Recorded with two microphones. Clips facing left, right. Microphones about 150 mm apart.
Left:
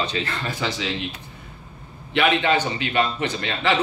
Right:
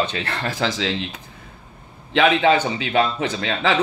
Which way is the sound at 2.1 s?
90° right.